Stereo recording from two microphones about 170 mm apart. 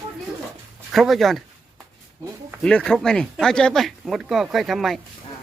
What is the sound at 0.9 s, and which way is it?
Speech, centre (ahead or behind).